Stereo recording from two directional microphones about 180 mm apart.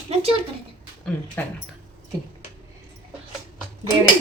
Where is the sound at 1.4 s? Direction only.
10° left (ahead or behind).